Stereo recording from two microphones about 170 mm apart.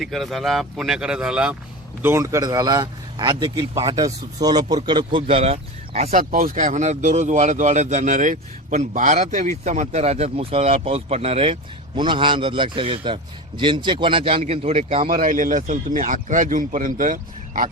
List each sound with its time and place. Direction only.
0.0 s a man's voice: centre (ahead or behind); by 6.1 s 40° right (ahead or behind)
6.1 s a man's voice: 55° right (ahead or behind); by 15.0 s 35° right (ahead or behind)
15.0 s speech: 55° right (ahead or behind)